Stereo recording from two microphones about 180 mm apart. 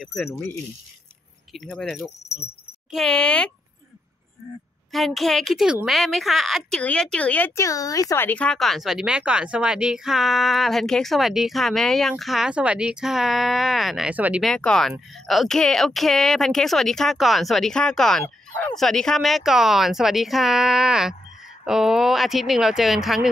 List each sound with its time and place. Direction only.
0.0 s speech: centre (ahead or behind)
0.3 s speech: 10° left (ahead or behind)
4.9 s speech: centre (ahead or behind)